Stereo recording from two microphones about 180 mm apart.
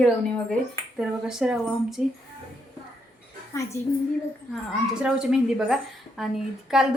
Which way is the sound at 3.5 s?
15° left (ahead or behind).